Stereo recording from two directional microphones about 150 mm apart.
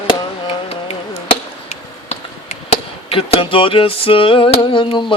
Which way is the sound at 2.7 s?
40° left (ahead or behind).